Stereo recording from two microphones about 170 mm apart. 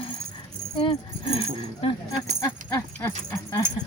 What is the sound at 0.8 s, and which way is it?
Speech, 35° left (ahead or behind).